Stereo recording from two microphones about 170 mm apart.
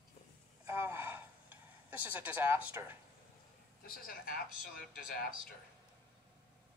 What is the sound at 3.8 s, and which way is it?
Speech, 60° left (ahead or behind).